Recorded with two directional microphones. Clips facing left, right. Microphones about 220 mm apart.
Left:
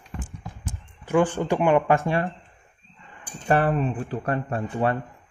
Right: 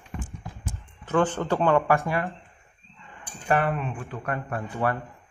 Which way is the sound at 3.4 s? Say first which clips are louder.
Left 3 dB; 30° left (ahead or behind).